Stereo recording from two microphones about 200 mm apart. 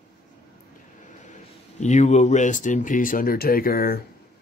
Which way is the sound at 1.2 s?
35° left (ahead or behind).